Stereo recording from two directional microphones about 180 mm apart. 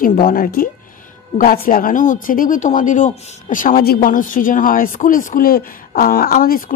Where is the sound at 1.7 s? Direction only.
50° left (ahead or behind).